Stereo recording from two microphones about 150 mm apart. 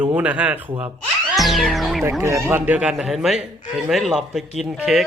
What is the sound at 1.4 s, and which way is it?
Music, centre (ahead or behind).